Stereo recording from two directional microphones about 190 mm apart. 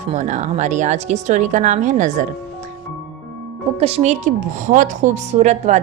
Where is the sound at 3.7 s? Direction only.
35° right (ahead or behind).